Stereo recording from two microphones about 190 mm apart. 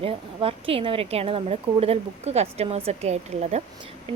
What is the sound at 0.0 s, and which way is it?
A woman's voice, 30° right (ahead or behind).